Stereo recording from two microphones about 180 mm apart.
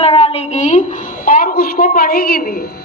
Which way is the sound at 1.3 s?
55° left (ahead or behind).